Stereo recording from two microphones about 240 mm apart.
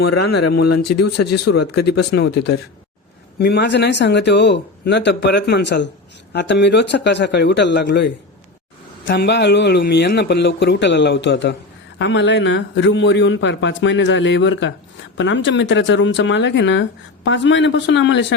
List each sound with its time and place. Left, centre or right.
0.6 s speech: left
1.9 s a man's voice: left